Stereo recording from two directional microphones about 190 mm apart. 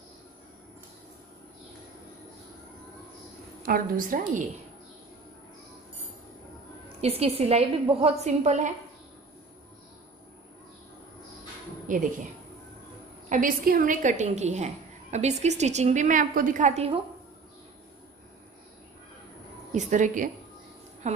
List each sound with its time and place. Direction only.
3.6 s a woman's voice: 50° right (ahead or behind)
7.0 s a woman's voice: 30° right (ahead or behind)
11.9 s speech: 45° right (ahead or behind)
13.3 s a woman's voice: 45° right (ahead or behind)
19.7 s a woman's voice: 40° right (ahead or behind)